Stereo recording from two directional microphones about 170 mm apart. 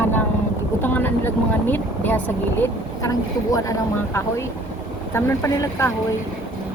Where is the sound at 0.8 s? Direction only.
10° left (ahead or behind).